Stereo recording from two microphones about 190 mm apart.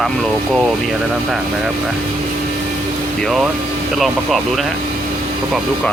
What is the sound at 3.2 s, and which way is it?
Speech, centre (ahead or behind).